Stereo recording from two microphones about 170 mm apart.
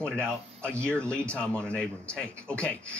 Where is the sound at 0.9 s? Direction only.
5° left (ahead or behind).